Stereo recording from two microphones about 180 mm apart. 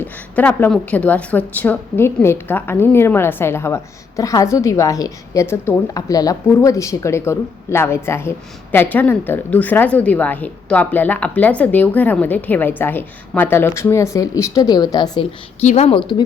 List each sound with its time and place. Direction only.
0.0 s a woman's voice: 10° left (ahead or behind)
15.6 s a woman's voice: 35° left (ahead or behind)